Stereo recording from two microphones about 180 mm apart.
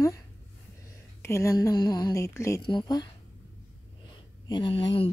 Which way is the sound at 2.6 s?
25° left (ahead or behind).